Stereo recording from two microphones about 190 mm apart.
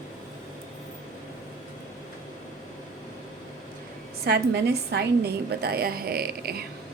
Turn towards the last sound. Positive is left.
turn(degrees=-55)  # may be behind; listen again after turning